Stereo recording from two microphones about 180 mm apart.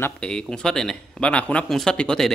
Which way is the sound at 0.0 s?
5° left (ahead or behind).